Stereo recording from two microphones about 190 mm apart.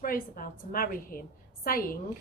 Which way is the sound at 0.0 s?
50° left (ahead or behind).